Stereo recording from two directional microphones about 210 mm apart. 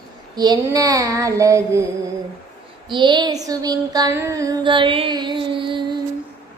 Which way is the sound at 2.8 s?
20° right (ahead or behind).